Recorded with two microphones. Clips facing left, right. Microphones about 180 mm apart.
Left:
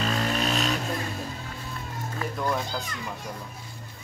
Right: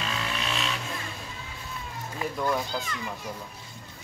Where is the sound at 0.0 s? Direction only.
40° left (ahead or behind).